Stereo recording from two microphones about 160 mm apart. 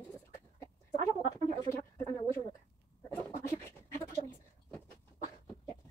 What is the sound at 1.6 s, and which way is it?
Bird, 15° left (ahead or behind).